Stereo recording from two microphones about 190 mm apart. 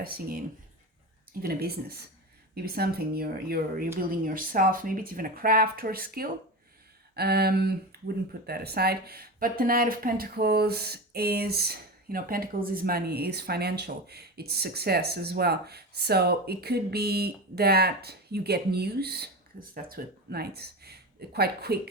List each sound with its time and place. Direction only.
0.0 s speech: 50° right (ahead or behind)